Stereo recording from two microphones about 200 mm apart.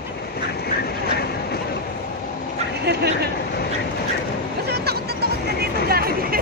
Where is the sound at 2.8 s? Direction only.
55° right (ahead or behind).